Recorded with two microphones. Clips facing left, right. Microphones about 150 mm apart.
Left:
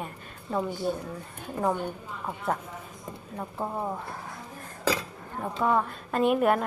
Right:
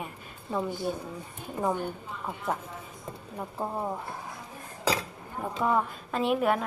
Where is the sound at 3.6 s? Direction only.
5° right (ahead or behind).